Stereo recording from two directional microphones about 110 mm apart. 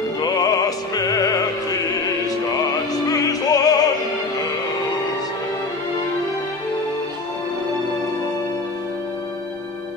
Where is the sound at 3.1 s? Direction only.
35° left (ahead or behind).